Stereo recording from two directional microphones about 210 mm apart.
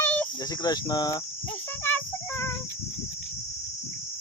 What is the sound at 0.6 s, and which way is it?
Cricket, 20° left (ahead or behind).